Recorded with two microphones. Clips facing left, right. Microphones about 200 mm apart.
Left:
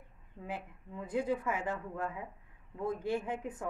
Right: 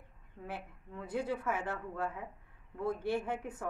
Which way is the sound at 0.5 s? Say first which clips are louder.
Left 2 dB; 15° left (ahead or behind).